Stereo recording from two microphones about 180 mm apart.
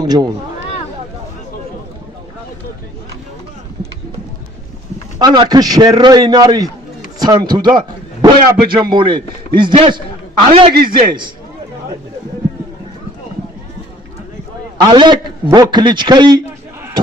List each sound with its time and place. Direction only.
0.0 s speech: 20° right (ahead or behind)
5.2 s a man's voice: 20° right (ahead or behind)
14.8 s a man's voice: 25° right (ahead or behind)